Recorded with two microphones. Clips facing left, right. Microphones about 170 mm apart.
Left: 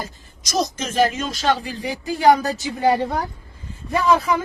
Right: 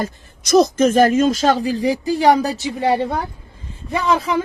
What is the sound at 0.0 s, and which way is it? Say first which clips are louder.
Speech: right 8 dB; 55° right (ahead or behind).